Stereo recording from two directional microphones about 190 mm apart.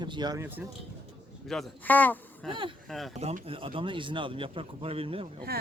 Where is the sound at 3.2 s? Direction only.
35° right (ahead or behind).